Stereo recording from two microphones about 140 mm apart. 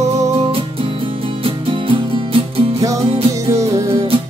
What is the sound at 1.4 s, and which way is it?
Music, 40° right (ahead or behind).